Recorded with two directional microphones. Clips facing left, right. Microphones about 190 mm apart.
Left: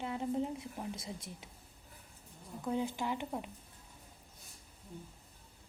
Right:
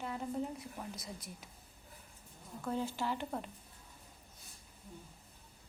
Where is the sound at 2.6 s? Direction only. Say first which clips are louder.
Left 1 dB; 15° left (ahead or behind).